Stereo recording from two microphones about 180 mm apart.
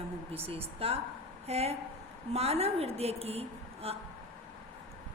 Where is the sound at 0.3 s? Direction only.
35° right (ahead or behind).